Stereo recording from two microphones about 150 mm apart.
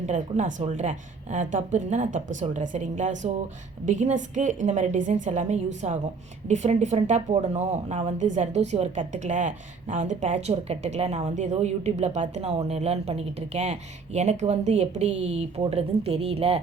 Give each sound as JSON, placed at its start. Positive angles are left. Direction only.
{"t": 0.0, "sound": "speech", "side_deg": -55}